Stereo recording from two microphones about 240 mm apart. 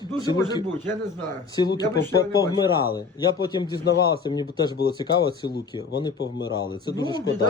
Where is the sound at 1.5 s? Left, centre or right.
Centre.